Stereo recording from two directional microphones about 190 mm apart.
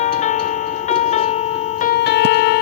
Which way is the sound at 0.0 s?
40° left (ahead or behind).